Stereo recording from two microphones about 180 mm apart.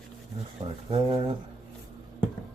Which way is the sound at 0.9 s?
25° right (ahead or behind).